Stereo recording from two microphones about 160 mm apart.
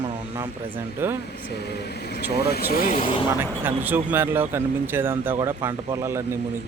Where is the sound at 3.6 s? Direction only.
10° right (ahead or behind).